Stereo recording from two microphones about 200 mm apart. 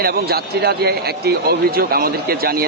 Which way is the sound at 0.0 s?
50° right (ahead or behind).